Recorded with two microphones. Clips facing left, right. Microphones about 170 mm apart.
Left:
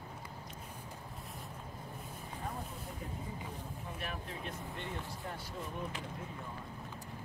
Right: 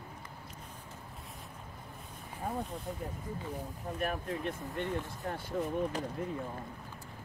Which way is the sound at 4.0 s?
50° right (ahead or behind).